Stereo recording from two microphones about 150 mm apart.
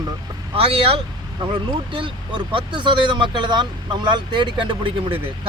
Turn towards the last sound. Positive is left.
turn(degrees=-35)  # may be behind; listen again after turning